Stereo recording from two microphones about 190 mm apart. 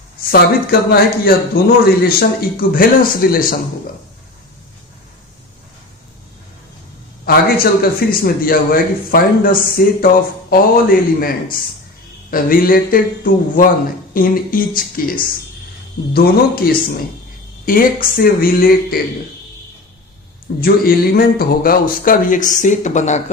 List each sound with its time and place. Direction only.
0.3 s a man's voice: 55° left (ahead or behind)
7.3 s a man's voice: 50° left (ahead or behind)
16.1 s a man's voice: 50° left (ahead or behind)
17.7 s a man's voice: 45° left (ahead or behind)
20.6 s a man's voice: 50° left (ahead or behind)